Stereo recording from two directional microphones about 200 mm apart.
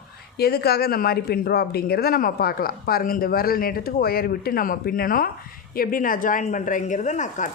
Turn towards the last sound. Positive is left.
turn(degrees=35)  # may be behind; listen again after turning